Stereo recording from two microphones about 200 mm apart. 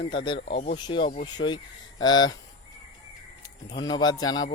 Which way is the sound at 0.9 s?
25° left (ahead or behind).